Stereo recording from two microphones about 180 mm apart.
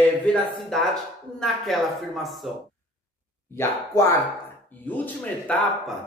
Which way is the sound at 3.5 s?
15° left (ahead or behind).